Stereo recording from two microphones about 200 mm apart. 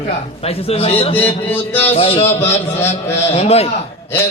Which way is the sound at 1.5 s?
10° left (ahead or behind).